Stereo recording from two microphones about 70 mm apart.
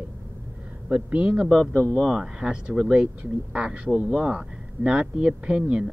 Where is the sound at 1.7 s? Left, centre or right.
Left.